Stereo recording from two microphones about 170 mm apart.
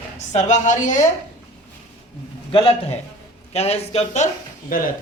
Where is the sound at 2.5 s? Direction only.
30° left (ahead or behind).